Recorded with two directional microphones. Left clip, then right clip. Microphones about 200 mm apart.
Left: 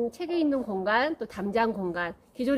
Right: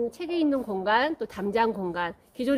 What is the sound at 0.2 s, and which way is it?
A woman's voice, 25° right (ahead or behind).